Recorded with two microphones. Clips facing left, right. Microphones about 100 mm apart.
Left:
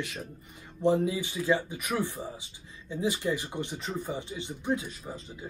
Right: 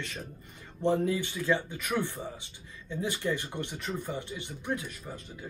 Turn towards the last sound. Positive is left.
turn(degrees=15)  # may be behind; listen again after turning